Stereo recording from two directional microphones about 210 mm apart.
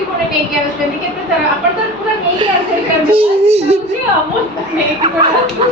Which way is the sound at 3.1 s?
30° right (ahead or behind).